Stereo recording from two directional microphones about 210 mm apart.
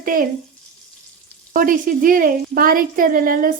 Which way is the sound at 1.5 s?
40° right (ahead or behind).